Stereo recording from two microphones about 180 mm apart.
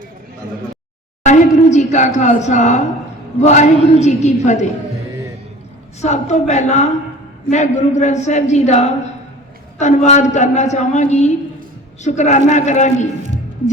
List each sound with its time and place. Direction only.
1.2 s a sound: 40° left (ahead or behind)
3.4 s a man's voice: 40° left (ahead or behind)
6.0 s a man's voice: 40° left (ahead or behind)